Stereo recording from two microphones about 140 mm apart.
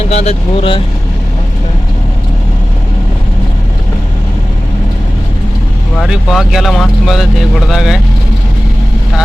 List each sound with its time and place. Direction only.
0.1 s speech: 50° left (ahead or behind)
6.0 s speech: centre (ahead or behind)